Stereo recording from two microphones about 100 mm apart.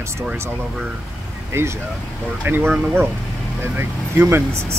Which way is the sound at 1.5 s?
25° right (ahead or behind).